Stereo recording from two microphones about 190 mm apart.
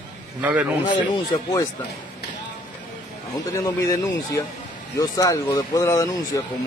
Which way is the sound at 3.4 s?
15° left (ahead or behind).